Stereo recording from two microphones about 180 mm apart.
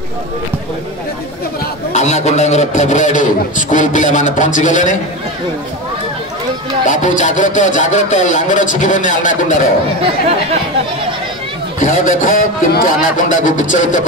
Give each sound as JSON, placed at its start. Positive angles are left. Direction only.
{"t": 1.9, "sound": "a man's voice", "side_deg": 40}
{"t": 6.9, "sound": "a man's voice", "side_deg": 45}
{"t": 11.8, "sound": "a man's voice", "side_deg": 45}